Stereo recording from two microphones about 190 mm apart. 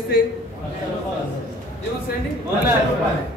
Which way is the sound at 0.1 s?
60° left (ahead or behind).